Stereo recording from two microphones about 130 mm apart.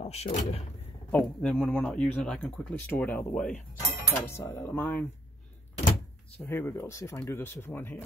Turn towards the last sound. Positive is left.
turn(degrees=15)  # may be behind; listen again after turning